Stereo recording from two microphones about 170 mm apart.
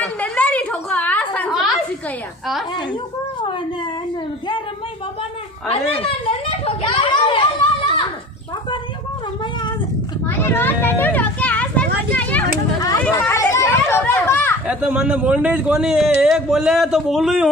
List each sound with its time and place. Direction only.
0.0 s a sound: 5° left (ahead or behind)
5.7 s speech: 35° left (ahead or behind)
6.6 s children playing: 30° left (ahead or behind)
10.2 s children playing: 15° left (ahead or behind)
12.1 s a sound: 10° left (ahead or behind)
13.2 s children playing: 15° left (ahead or behind)
14.7 s a man's voice: 10° right (ahead or behind)